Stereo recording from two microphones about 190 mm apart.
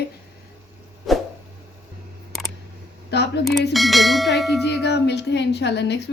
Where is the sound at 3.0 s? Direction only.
60° left (ahead or behind).